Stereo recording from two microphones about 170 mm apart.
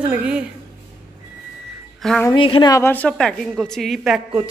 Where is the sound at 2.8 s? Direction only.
10° left (ahead or behind).